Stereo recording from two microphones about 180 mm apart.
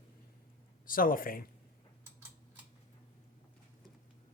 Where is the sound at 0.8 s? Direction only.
50° left (ahead or behind).